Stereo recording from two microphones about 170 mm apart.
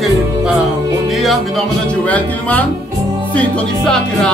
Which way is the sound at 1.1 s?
Centre (ahead or behind).